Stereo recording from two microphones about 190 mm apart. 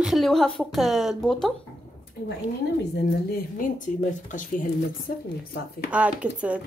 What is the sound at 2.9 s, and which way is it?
Speech, 50° left (ahead or behind).